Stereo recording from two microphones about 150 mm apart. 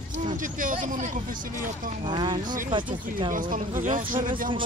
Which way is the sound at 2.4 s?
65° right (ahead or behind).